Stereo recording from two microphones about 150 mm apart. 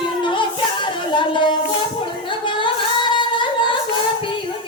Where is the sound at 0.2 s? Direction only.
30° left (ahead or behind).